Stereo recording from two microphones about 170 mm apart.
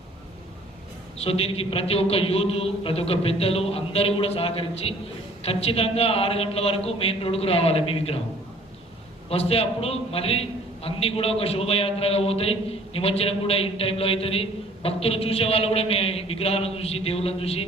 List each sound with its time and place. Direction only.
1.2 s a man's voice: 35° left (ahead or behind)
9.3 s a man's voice: 35° left (ahead or behind)